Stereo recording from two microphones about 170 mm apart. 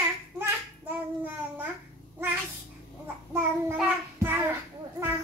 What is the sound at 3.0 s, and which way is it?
Child singing, 15° right (ahead or behind).